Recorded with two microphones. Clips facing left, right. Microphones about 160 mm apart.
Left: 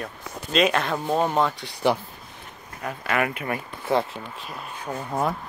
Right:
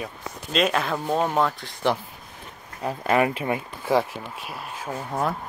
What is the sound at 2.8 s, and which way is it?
Speech, 35° right (ahead or behind).